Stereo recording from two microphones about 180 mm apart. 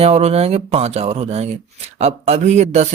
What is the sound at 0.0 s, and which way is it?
Speech, 35° right (ahead or behind).